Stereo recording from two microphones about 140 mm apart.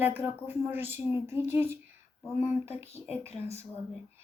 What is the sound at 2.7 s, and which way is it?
Speech, 45° left (ahead or behind).